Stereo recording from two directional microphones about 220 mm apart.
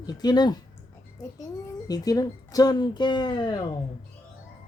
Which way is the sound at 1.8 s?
15° left (ahead or behind).